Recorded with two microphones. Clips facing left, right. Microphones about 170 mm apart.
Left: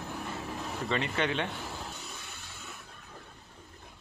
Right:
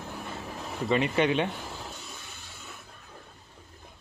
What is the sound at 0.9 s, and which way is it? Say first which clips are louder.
Speech: right 7 dB; 15° right (ahead or behind).